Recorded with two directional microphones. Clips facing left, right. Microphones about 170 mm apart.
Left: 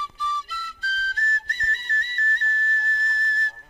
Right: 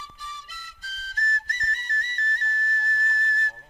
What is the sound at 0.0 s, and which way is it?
Flute, 45° right (ahead or behind).